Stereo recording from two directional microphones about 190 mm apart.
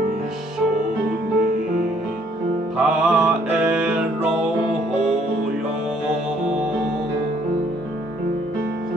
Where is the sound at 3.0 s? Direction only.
5° right (ahead or behind).